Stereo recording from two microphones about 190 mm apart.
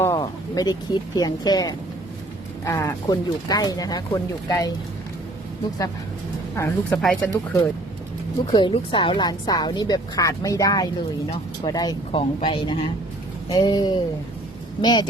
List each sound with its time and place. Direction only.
0.0 s a woman's voice: 20° left (ahead or behind)
6.6 s speech: 5° left (ahead or behind)
8.5 s a woman's voice: 25° left (ahead or behind)